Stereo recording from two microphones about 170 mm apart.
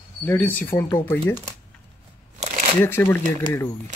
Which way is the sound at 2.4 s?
50° right (ahead or behind).